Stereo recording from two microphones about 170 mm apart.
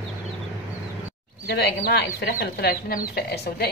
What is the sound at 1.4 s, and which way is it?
Speech, 70° left (ahead or behind).